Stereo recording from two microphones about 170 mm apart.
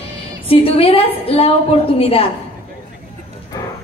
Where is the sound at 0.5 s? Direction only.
35° left (ahead or behind).